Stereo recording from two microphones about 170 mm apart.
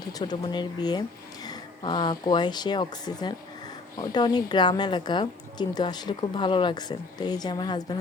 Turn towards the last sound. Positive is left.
turn(degrees=25)  # may be behind; listen again after turning